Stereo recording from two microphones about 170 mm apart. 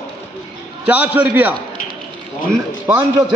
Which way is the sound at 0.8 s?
10° right (ahead or behind).